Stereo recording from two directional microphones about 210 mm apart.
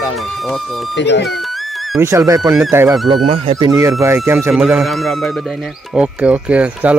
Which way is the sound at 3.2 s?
25° right (ahead or behind).